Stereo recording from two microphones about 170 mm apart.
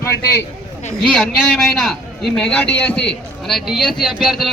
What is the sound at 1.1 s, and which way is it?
A man's voice, 5° left (ahead or behind).